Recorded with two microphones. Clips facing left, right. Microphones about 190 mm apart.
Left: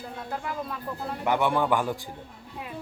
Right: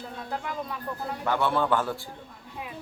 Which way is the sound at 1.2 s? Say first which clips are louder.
Left 1 dB; 15° left (ahead or behind).